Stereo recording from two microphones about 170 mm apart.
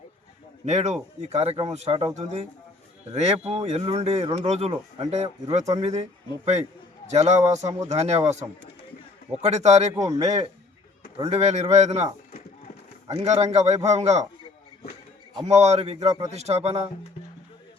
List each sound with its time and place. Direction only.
0.6 s speech: 40° right (ahead or behind)
9.3 s speech: 40° right (ahead or behind)
13.1 s speech: 40° right (ahead or behind)
15.4 s speech: 40° right (ahead or behind)